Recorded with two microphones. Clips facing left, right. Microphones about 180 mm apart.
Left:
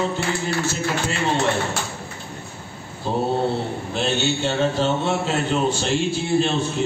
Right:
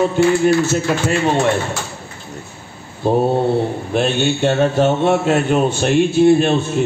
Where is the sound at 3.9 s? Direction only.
55° right (ahead or behind).